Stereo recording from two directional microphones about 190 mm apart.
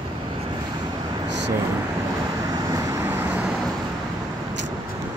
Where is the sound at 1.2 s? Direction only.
65° right (ahead or behind).